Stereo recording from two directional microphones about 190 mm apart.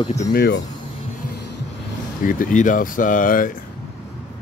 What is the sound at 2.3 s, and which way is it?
Speech, 45° left (ahead or behind).